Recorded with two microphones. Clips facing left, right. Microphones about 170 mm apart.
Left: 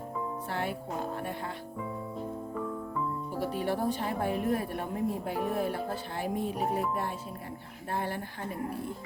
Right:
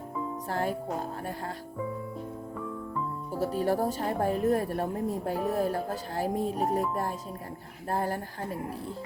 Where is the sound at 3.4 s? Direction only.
40° right (ahead or behind).